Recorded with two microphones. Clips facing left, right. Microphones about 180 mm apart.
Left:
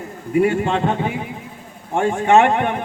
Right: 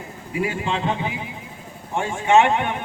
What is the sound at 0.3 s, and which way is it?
Speech, 55° left (ahead or behind).